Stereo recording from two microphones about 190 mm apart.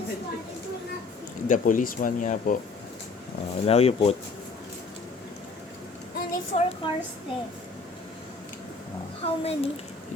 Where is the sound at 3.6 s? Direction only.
30° left (ahead or behind).